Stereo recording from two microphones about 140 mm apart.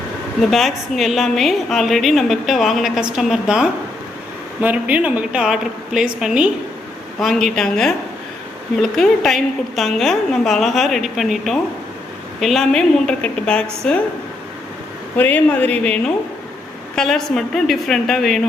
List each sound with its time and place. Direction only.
0.5 s a woman's voice: centre (ahead or behind)
15.2 s a woman's voice: 10° left (ahead or behind)